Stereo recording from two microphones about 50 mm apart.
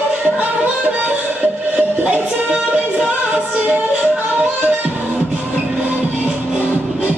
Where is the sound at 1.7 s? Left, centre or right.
Right.